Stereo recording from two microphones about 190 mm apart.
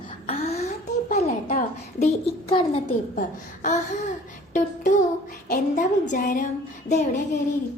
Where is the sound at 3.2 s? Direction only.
40° left (ahead or behind).